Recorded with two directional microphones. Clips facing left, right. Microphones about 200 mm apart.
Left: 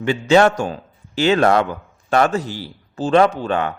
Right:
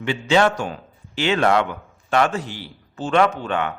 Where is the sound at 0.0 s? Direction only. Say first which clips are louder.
Left 4 dB; 40° left (ahead or behind).